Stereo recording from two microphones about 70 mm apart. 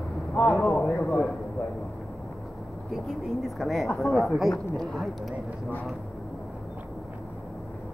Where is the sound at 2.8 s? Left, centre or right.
Centre.